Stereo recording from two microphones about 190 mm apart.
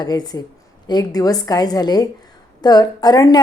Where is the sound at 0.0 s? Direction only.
20° left (ahead or behind).